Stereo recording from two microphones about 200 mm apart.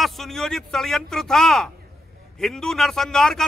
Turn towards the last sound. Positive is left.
turn(degrees=5)  # may be behind; listen again after turning